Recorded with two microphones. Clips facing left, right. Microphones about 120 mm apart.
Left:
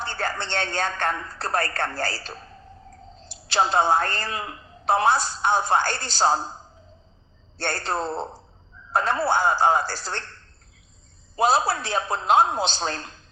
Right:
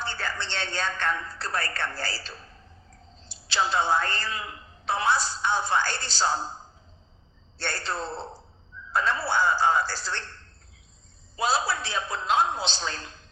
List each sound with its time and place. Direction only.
0.0 s a woman's voice: 50° left (ahead or behind)
7.6 s a woman's voice: 50° left (ahead or behind)
11.3 s a woman's voice: 50° left (ahead or behind)